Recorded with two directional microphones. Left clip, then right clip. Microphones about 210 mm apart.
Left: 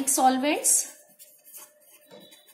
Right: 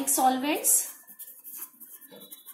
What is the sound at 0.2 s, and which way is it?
Speech, 25° left (ahead or behind).